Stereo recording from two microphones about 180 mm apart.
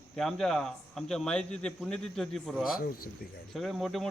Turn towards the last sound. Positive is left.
turn(degrees=0)  # may be behind; listen again after turning